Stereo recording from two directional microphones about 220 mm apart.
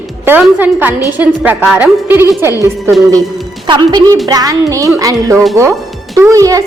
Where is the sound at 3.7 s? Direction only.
20° right (ahead or behind).